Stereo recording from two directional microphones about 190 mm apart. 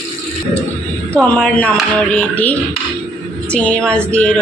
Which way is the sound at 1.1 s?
5° left (ahead or behind).